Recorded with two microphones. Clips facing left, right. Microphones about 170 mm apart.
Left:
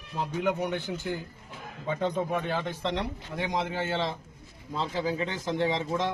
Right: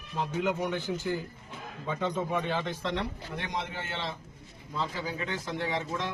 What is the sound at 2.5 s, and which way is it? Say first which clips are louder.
Speech: left 1 dB; 10° left (ahead or behind).